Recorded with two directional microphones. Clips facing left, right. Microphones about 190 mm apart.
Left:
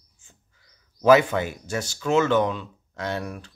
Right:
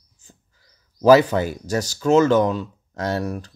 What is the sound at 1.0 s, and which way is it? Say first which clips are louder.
Speech: right 3 dB; 35° right (ahead or behind).